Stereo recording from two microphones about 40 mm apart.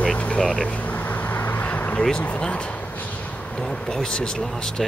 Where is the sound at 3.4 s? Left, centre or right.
Left.